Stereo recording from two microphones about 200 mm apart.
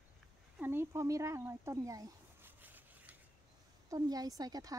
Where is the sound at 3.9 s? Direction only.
20° right (ahead or behind).